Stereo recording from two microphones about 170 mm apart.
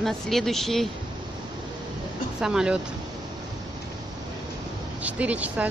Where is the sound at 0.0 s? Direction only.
Centre (ahead or behind).